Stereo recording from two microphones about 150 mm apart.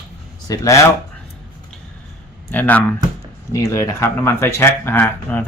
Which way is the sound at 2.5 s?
10° left (ahead or behind).